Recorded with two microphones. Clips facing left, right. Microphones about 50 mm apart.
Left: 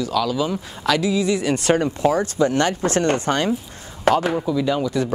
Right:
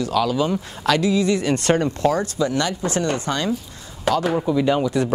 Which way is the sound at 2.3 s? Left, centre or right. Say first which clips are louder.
Left 3 dB; left.